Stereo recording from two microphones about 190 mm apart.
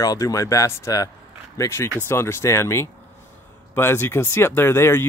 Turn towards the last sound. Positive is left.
turn(degrees=15)  # may be behind; listen again after turning